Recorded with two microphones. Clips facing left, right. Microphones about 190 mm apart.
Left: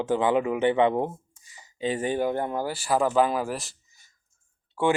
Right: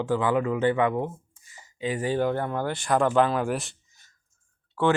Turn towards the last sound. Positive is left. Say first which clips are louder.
# right 1 dB
turn(degrees=10)  # may be behind; listen again after turning